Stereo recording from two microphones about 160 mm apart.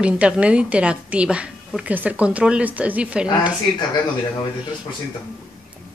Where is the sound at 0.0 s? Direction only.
5° right (ahead or behind).